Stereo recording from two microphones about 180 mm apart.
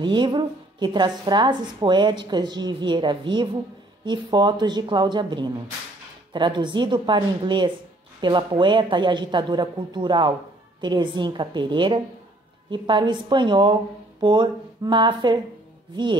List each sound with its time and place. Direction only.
0.0 s a woman's voice: 25° right (ahead or behind)